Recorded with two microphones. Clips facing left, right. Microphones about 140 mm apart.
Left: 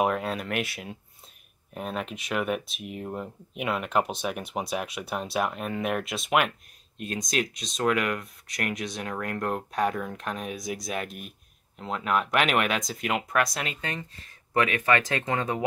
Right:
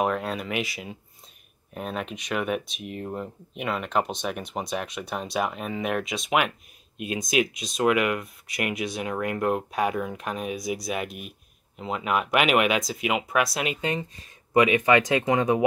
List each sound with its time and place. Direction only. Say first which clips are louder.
0.0 s speech: even; centre (ahead or behind)
13.6 s speech: right 6 dB; 15° right (ahead or behind)